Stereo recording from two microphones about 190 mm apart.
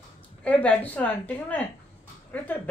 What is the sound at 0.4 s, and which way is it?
Speech, 5° left (ahead or behind).